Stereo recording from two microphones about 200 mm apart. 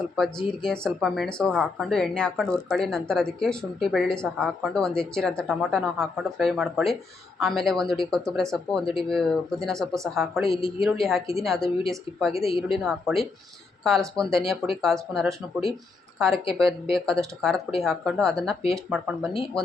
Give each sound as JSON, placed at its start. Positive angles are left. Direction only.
{"t": 0.0, "sound": "speech", "side_deg": 0}
{"t": 12.5, "sound": "a woman's voice", "side_deg": 25}
{"t": 12.7, "sound": "a woman's voice", "side_deg": 0}